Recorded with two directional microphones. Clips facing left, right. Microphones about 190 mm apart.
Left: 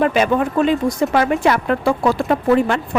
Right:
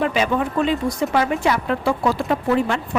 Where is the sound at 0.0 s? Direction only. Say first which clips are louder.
Left 4 dB; 50° left (ahead or behind).